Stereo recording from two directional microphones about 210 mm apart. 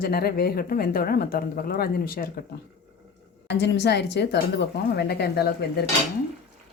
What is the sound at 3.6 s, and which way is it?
Speech, 55° left (ahead or behind).